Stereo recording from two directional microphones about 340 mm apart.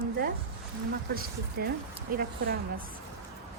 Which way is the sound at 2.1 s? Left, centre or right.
Right.